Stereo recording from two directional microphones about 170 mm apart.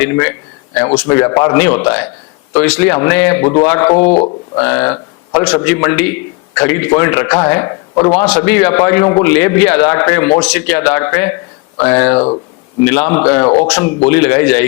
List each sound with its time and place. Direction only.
0.0 s a man's voice: 10° left (ahead or behind)
13.4 s speech: 35° left (ahead or behind)
13.7 s a man's voice: 10° left (ahead or behind)